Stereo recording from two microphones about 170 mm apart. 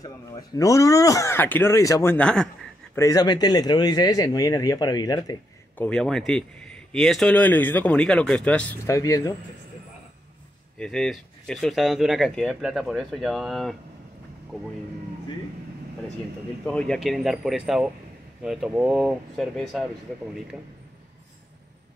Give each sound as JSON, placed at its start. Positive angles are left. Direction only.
{"t": 0.0, "sound": "speech", "side_deg": 20}
{"t": 3.0, "sound": "speech", "side_deg": 20}
{"t": 5.8, "sound": "speech", "side_deg": 5}
{"t": 10.8, "sound": "speech", "side_deg": 5}
{"t": 16.6, "sound": "speech", "side_deg": 5}